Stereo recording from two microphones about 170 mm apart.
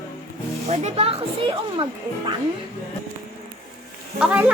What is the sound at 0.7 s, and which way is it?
Speech, 40° right (ahead or behind).